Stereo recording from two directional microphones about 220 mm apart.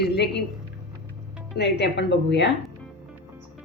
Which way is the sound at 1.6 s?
50° left (ahead or behind).